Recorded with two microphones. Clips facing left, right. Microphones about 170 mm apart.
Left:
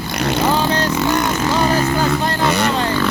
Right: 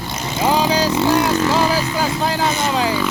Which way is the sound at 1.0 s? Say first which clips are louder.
Right 2 dB; 30° right (ahead or behind).